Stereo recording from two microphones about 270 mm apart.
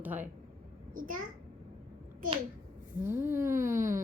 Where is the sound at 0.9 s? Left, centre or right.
Right.